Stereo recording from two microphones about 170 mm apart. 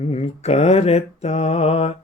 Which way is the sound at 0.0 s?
40° left (ahead or behind).